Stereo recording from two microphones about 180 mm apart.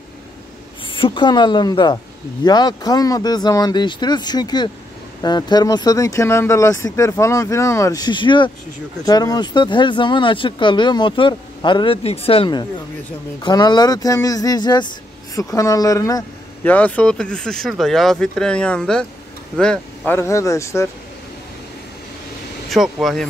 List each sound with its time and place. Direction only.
0.8 s speech: 30° left (ahead or behind)
16.7 s speech: 10° left (ahead or behind)
22.7 s speech: centre (ahead or behind)